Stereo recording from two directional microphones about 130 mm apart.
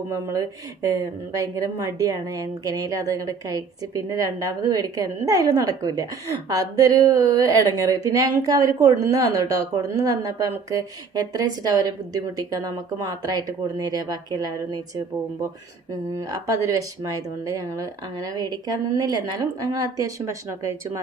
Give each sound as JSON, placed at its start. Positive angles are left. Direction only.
{"t": 0.1, "sound": "a woman's voice", "side_deg": -25}
{"t": 16.1, "sound": "a woman's voice", "side_deg": -25}